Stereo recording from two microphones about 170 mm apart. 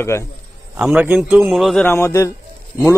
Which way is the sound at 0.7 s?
10° right (ahead or behind).